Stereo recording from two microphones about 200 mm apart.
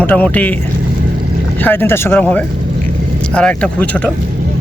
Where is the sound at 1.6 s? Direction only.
10° left (ahead or behind).